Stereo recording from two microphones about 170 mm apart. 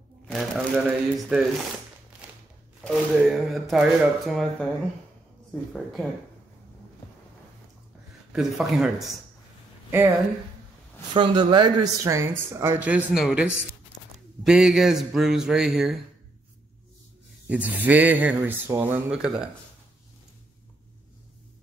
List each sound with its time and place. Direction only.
0.3 s speech: centre (ahead or behind)
2.8 s speech: centre (ahead or behind)
8.3 s speech: centre (ahead or behind)
9.8 s speech: 15° right (ahead or behind)
11.1 s speech: 25° right (ahead or behind); by 16.0 s centre (ahead or behind)
17.5 s speech: 10° right (ahead or behind)